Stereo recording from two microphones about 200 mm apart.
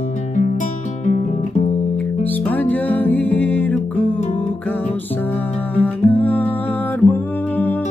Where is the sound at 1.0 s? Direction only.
35° left (ahead or behind).